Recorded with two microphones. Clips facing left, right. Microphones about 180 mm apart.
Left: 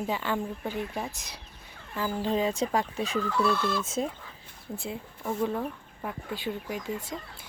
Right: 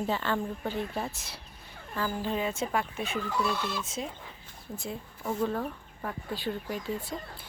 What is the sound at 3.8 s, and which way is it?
Speech, 50° left (ahead or behind).